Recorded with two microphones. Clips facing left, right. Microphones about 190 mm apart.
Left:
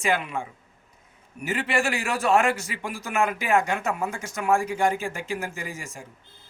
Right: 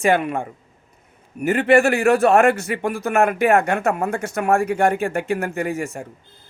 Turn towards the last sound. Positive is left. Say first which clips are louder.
# right 12 dB
turn(degrees=-60)  # may be behind; listen again after turning